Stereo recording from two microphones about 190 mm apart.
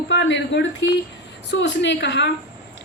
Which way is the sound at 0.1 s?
75° left (ahead or behind).